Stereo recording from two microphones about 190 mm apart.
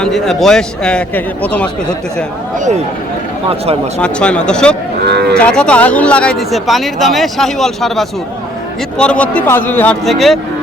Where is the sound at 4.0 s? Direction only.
5° left (ahead or behind).